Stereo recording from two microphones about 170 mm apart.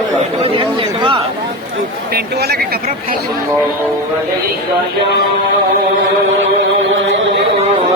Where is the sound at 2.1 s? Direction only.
70° right (ahead or behind).